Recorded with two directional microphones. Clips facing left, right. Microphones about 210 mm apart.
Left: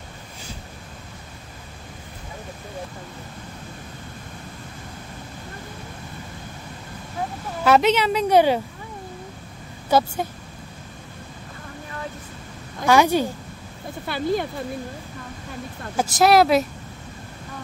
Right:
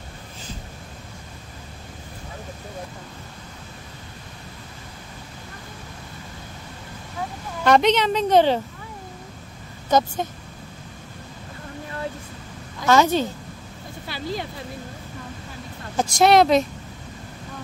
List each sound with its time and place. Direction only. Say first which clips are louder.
7.6 s a woman's voice: even; 5° left (ahead or behind)
9.8 s speech: even; 10° left (ahead or behind)
12.8 s a woman's voice: left 1 dB; 15° left (ahead or behind)
14.0 s speech: left 6 dB; 55° left (ahead or behind)
16.0 s speech: even; 5° left (ahead or behind)